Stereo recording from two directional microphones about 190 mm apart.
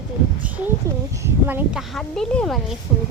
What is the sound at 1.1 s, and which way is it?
Speech, 10° right (ahead or behind).